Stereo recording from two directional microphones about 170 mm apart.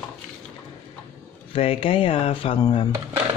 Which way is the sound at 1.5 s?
35° left (ahead or behind).